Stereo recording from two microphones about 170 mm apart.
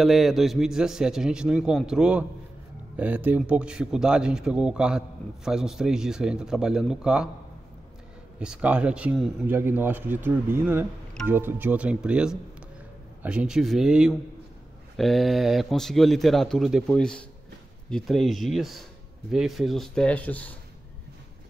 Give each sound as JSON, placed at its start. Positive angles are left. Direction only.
{"t": 0.0, "sound": "a man's voice", "side_deg": 0}
{"t": 8.4, "sound": "a man's voice", "side_deg": -5}